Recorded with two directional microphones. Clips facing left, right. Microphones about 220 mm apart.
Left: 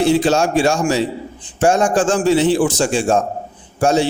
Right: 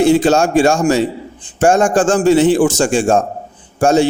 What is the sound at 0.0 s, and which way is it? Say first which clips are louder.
A man's voice: right 3 dB; 50° right (ahead or behind).